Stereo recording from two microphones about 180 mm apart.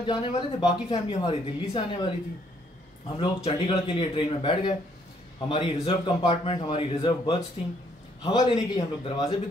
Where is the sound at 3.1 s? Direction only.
30° left (ahead or behind).